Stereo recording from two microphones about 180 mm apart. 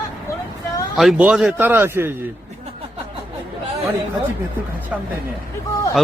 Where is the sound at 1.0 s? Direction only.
5° right (ahead or behind).